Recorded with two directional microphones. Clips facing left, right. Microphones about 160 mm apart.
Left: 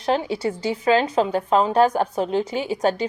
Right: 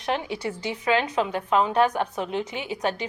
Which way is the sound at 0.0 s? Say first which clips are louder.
Left 5 dB; 30° left (ahead or behind).